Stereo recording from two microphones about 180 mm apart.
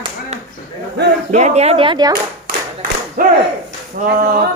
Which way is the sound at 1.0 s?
70° right (ahead or behind).